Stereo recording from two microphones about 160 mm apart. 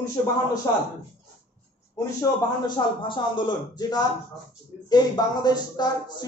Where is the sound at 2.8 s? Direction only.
30° left (ahead or behind).